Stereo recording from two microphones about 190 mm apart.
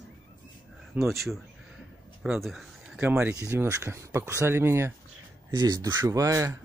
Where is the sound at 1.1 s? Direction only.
Centre (ahead or behind).